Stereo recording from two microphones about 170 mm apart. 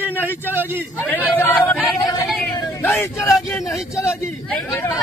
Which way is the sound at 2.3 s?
10° left (ahead or behind).